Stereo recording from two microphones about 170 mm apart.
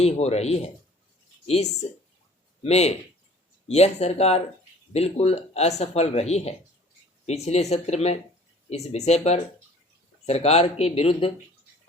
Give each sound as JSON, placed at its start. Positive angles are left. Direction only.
{"t": 0.0, "sound": "speech", "side_deg": 40}